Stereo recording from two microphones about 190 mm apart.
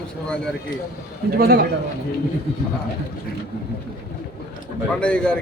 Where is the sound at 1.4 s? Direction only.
55° right (ahead or behind).